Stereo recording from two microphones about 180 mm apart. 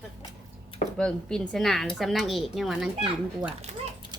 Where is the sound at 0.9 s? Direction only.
5° left (ahead or behind).